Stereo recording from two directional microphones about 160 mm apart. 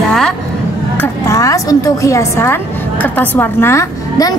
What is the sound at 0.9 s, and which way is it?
A woman's voice, 15° left (ahead or behind).